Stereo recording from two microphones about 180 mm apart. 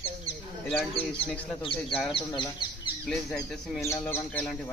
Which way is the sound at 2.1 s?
25° left (ahead or behind).